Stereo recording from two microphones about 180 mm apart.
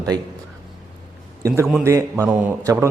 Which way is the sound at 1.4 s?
20° right (ahead or behind).